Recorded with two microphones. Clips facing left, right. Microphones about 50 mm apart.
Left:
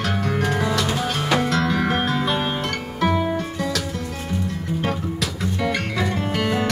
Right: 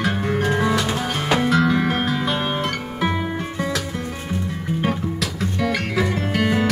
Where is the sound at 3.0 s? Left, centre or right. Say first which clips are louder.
Left 3 dB; centre.